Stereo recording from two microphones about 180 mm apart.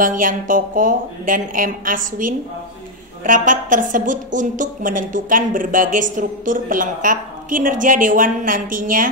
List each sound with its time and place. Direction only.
0.0 s a woman's voice: 50° right (ahead or behind)
3.3 s a woman's voice: 45° right (ahead or behind)